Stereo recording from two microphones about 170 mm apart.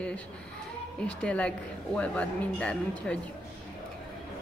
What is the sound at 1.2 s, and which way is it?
A woman's voice, 5° left (ahead or behind).